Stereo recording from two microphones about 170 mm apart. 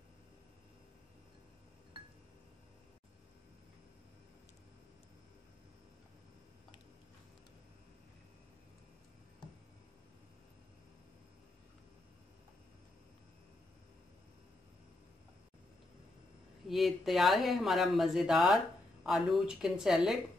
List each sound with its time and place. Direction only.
16.6 s speech: centre (ahead or behind)